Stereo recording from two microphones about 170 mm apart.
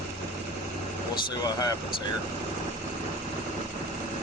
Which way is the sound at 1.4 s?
25° left (ahead or behind).